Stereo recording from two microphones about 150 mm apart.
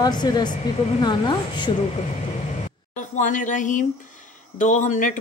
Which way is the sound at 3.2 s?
55° left (ahead or behind).